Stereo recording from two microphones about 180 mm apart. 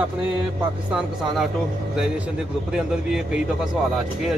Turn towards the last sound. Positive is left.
turn(degrees=-5)  # may be behind; listen again after turning